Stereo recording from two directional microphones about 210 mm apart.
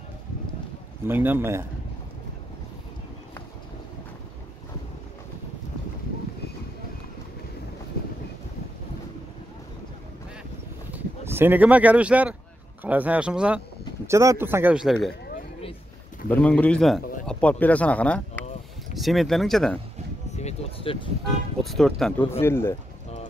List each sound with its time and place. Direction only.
1.0 s speech: 10° right (ahead or behind)
10.9 s speech: 10° right (ahead or behind)
16.3 s a man's voice: 5° left (ahead or behind)
20.2 s speech: 30° left (ahead or behind)
21.6 s a man's voice: centre (ahead or behind)